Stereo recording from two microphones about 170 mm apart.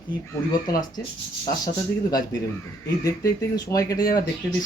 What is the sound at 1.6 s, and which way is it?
Speech, 20° left (ahead or behind).